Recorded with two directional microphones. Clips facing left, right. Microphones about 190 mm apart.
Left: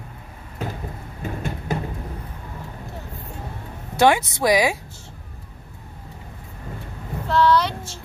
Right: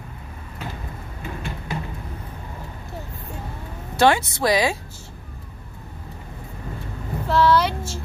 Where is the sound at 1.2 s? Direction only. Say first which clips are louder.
Left 4 dB; 45° left (ahead or behind).